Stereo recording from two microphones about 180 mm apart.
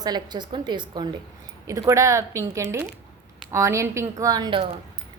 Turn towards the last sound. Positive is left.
turn(degrees=-25)  # may be behind; listen again after turning